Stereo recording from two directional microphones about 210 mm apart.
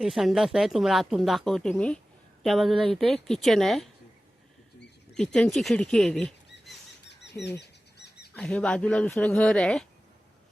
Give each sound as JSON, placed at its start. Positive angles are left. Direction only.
{"t": 0.0, "sound": "speech", "side_deg": 0}
{"t": 5.1, "sound": "speech", "side_deg": 0}
{"t": 7.1, "sound": "a sound", "side_deg": 55}
{"t": 8.4, "sound": "speech", "side_deg": 5}